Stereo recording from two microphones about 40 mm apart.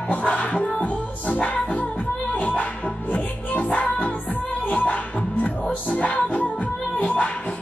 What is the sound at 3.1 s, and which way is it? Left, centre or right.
Music, left.